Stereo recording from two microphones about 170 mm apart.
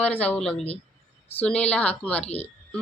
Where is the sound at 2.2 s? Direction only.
35° left (ahead or behind).